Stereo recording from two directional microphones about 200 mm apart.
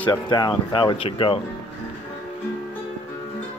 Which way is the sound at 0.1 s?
20° left (ahead or behind).